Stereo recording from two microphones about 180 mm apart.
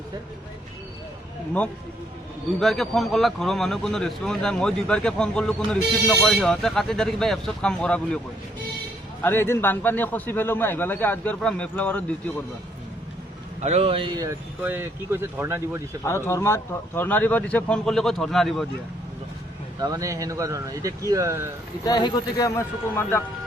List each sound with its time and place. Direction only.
2.6 s a man's voice: centre (ahead or behind)
9.2 s a man's voice: 15° left (ahead or behind)
13.6 s speech: 35° right (ahead or behind); by 15.8 s 15° right (ahead or behind)
16.0 s a man's voice: 15° left (ahead or behind)
19.8 s speech: 20° right (ahead or behind)
21.8 s a man's voice: 20° left (ahead or behind)